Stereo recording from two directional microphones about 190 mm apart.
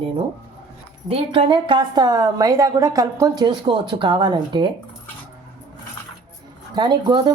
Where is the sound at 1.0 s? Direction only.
30° right (ahead or behind).